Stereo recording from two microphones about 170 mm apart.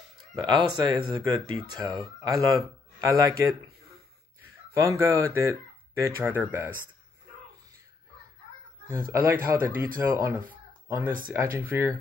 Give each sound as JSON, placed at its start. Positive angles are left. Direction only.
{"t": 0.4, "sound": "speech", "side_deg": -25}
{"t": 4.7, "sound": "speech", "side_deg": -15}
{"t": 9.1, "sound": "speech", "side_deg": -15}
{"t": 10.5, "sound": "a sound", "side_deg": -15}
{"t": 11.5, "sound": "speech", "side_deg": -10}